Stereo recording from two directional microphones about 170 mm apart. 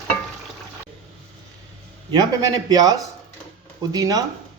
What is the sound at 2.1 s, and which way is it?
Speech, 25° right (ahead or behind).